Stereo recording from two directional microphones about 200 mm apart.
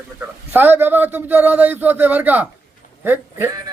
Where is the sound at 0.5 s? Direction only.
10° right (ahead or behind).